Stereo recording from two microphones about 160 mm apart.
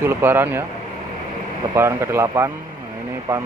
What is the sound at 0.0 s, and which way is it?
Speech, 15° right (ahead or behind).